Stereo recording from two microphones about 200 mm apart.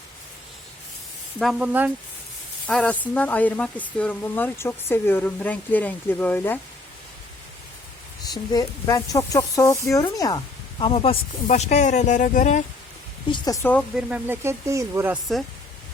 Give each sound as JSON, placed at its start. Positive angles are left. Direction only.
{"t": 1.4, "sound": "speech", "side_deg": 0}
{"t": 2.6, "sound": "speech", "side_deg": 5}
{"t": 8.3, "sound": "speech", "side_deg": 15}
{"t": 13.3, "sound": "speech", "side_deg": 20}
{"t": 13.9, "sound": "speech", "side_deg": -10}